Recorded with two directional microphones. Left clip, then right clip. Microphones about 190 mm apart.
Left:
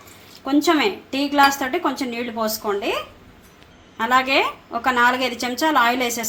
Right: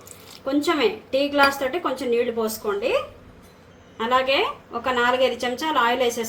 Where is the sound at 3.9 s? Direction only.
40° left (ahead or behind).